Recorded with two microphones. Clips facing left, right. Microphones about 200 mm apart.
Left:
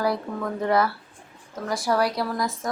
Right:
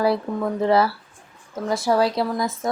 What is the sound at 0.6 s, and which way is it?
A woman's voice, 30° right (ahead or behind).